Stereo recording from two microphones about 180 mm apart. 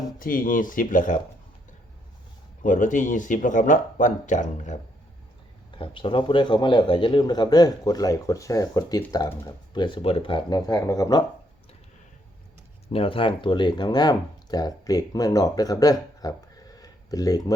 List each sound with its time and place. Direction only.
0.2 s speech: 50° left (ahead or behind)
2.6 s speech: 45° left (ahead or behind)
5.7 s a man's voice: 25° left (ahead or behind)
12.9 s a man's voice: 30° left (ahead or behind)
16.7 s a sound: 20° left (ahead or behind)